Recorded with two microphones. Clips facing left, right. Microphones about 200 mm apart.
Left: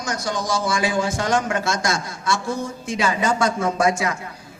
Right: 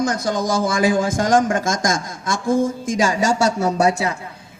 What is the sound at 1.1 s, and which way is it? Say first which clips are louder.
A man's voice: right 5 dB; 50° right (ahead or behind).